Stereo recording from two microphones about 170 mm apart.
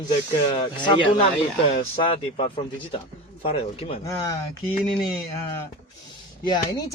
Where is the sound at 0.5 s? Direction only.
30° left (ahead or behind).